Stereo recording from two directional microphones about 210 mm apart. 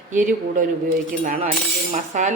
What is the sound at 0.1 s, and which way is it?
A woman's voice, 40° right (ahead or behind).